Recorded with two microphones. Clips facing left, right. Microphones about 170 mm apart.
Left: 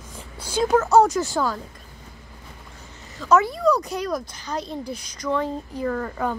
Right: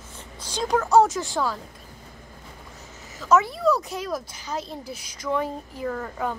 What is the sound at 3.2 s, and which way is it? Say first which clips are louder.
Speech: left 2 dB; centre (ahead or behind).